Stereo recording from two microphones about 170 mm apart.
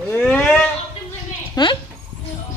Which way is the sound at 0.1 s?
5° left (ahead or behind).